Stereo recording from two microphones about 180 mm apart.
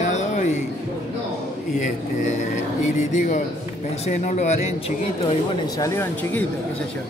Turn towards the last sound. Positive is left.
turn(degrees=10)  # may be behind; listen again after turning